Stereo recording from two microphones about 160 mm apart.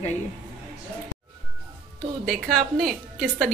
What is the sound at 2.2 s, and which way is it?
Speech, centre (ahead or behind).